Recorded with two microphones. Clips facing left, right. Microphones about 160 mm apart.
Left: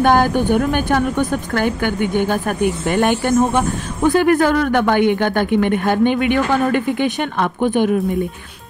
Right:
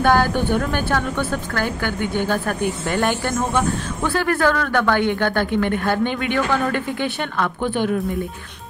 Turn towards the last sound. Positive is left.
turn(degrees=15)  # may be behind; listen again after turning